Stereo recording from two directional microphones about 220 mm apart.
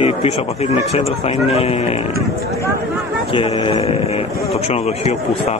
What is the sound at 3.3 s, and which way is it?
A man's voice, 25° left (ahead or behind).